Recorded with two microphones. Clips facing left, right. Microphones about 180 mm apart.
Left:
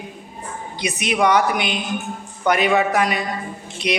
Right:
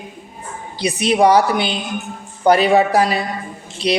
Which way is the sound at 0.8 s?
30° right (ahead or behind).